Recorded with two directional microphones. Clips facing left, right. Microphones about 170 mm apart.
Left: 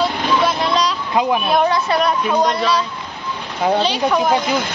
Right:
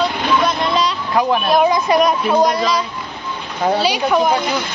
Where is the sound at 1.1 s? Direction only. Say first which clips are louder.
Right 1 dB; 20° left (ahead or behind).